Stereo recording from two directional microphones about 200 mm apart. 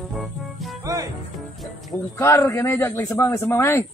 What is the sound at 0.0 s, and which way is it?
Music, centre (ahead or behind).